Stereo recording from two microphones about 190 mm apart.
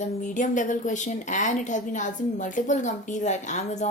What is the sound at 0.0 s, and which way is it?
A woman's voice, 40° left (ahead or behind).